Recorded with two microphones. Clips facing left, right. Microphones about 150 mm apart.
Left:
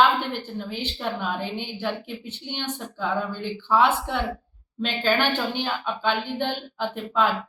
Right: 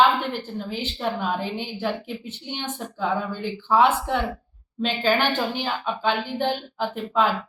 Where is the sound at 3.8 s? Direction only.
40° right (ahead or behind).